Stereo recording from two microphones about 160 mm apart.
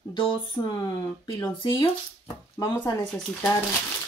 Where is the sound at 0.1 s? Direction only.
30° left (ahead or behind).